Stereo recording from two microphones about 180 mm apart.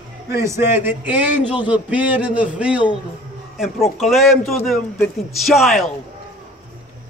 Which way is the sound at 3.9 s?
Centre (ahead or behind).